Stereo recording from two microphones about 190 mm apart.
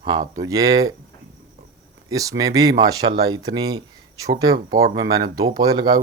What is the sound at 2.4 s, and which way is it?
Speech, 20° right (ahead or behind).